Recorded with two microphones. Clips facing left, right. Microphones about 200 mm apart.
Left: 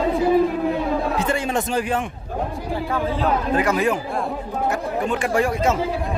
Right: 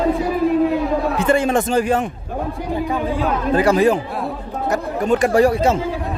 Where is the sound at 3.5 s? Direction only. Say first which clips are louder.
Right 9 dB; 35° right (ahead or behind).